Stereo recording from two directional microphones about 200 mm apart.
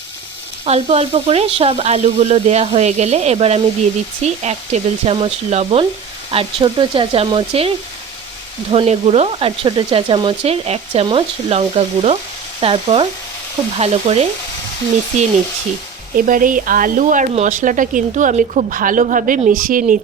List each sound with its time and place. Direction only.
0.6 s speech: 30° right (ahead or behind)
8.7 s speech: 30° right (ahead or behind)
16.1 s speech: 45° right (ahead or behind)